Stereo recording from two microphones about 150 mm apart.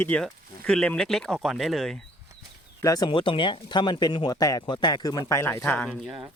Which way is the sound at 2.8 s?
25° left (ahead or behind).